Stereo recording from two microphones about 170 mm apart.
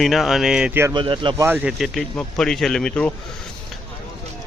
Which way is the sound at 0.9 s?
30° right (ahead or behind).